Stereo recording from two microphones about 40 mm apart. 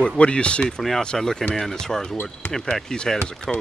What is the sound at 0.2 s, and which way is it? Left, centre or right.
Speech, left.